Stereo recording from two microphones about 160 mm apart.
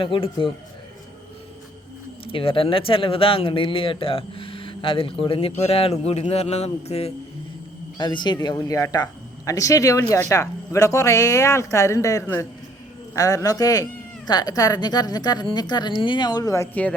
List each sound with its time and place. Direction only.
0.0 s speech: 30° left (ahead or behind)
2.2 s speech: 35° left (ahead or behind)
7.9 s speech: 25° left (ahead or behind)